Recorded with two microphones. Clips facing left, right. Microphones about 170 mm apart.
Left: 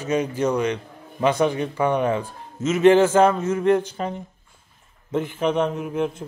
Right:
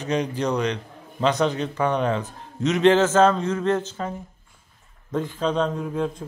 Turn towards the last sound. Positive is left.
turn(degrees=20)  # may be behind; listen again after turning